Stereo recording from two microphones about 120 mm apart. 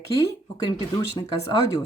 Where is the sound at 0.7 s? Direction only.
30° left (ahead or behind).